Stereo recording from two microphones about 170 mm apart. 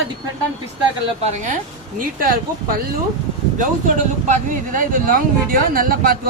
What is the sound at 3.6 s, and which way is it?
Speech, 50° right (ahead or behind).